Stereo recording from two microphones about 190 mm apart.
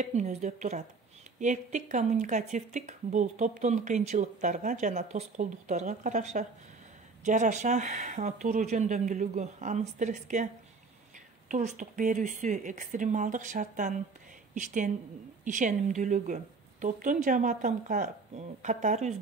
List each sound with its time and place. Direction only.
0.0 s a woman's voice: 35° right (ahead or behind)